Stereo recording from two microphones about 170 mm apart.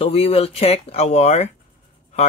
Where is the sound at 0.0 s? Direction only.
35° left (ahead or behind).